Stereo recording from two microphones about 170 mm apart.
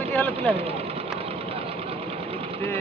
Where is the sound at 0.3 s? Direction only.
35° right (ahead or behind).